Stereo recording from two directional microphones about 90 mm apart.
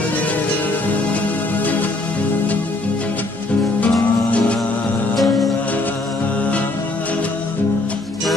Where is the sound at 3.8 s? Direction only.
15° left (ahead or behind).